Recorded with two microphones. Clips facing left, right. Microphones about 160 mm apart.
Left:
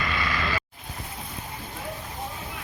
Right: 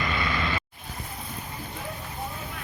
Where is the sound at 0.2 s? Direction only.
20° right (ahead or behind).